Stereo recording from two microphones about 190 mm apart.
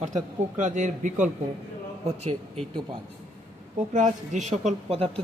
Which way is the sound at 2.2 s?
30° right (ahead or behind).